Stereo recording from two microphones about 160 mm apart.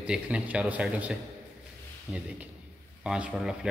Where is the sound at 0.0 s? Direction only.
5° right (ahead or behind).